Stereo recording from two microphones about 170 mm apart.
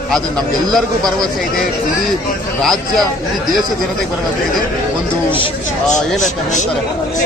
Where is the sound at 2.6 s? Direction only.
Centre (ahead or behind).